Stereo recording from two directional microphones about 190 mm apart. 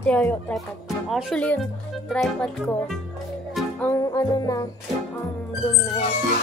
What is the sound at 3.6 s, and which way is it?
Music, centre (ahead or behind).